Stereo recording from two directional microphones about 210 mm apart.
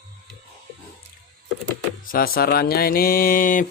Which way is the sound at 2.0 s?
45° left (ahead or behind).